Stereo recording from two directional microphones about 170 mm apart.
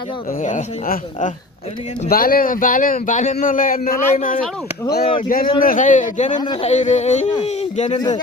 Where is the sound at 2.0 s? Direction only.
60° left (ahead or behind).